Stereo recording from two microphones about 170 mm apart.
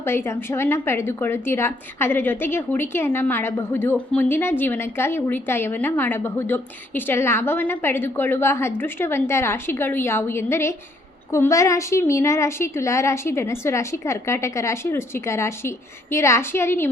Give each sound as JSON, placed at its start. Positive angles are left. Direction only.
{"t": 0.0, "sound": "a woman's voice", "side_deg": 15}